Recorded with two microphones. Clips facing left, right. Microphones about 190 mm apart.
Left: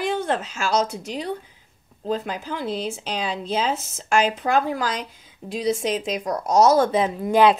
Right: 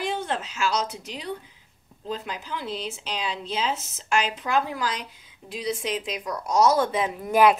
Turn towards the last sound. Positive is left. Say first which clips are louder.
# left 2 dB
turn(degrees=25)  # may be behind; listen again after turning